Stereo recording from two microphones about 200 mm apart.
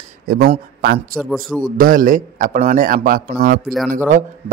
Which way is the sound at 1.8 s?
45° right (ahead or behind).